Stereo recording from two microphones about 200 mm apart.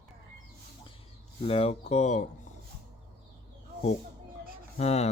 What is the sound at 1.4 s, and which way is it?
Speech, 30° left (ahead or behind).